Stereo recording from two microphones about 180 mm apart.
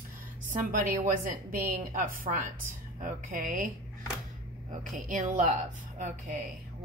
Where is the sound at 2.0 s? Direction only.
50° right (ahead or behind).